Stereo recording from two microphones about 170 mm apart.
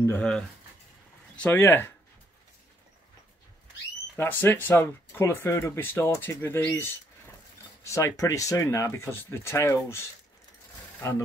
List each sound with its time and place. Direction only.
0.0 s speech: 10° left (ahead or behind)
4.2 s speech: 10° left (ahead or behind)